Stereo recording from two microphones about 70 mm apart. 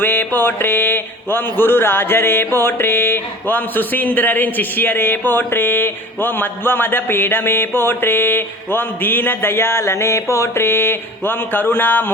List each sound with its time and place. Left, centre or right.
0.0 s speech: left